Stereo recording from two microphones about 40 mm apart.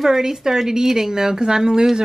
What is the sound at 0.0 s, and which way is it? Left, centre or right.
A woman's voice, centre.